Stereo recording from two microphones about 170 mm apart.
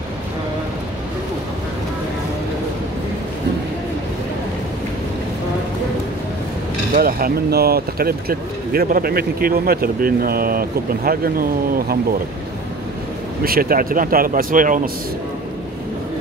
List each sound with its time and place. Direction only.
6.9 s speech: 60° right (ahead or behind)
13.4 s speech: 60° right (ahead or behind)